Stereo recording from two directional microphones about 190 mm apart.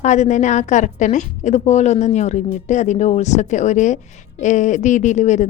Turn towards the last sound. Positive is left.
turn(degrees=40)  # may be behind; listen again after turning